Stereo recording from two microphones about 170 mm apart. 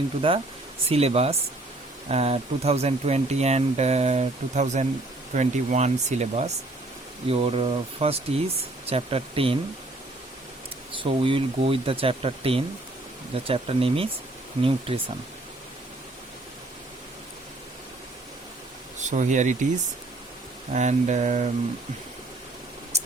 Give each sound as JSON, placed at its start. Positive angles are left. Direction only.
{"t": 0.2, "sound": "speech", "side_deg": -30}
{"t": 10.9, "sound": "speech", "side_deg": -30}
{"t": 18.9, "sound": "speech", "side_deg": -45}
{"t": 22.9, "sound": "a sound", "side_deg": -40}